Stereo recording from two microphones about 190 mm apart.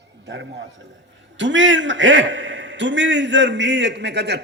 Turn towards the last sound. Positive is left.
turn(degrees=-65)  # may be behind; listen again after turning